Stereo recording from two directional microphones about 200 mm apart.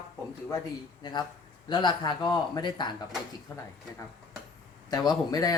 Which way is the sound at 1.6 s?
20° left (ahead or behind).